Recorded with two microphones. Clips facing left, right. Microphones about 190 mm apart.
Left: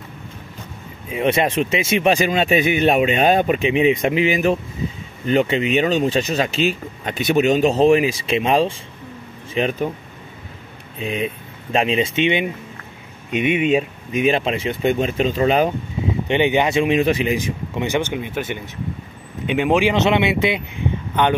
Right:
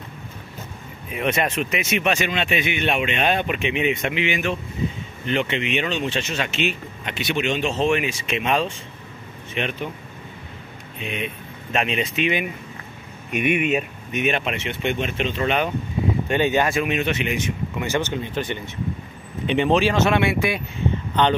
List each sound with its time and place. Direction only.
1.1 s speech: 30° left (ahead or behind)
11.0 s speech: 35° left (ahead or behind)
16.3 s speech: 15° left (ahead or behind); by 17.8 s 35° left (ahead or behind)
17.8 s a man's voice: 15° left (ahead or behind)